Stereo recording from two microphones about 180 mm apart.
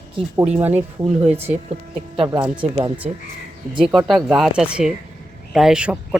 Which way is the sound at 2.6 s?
20° right (ahead or behind).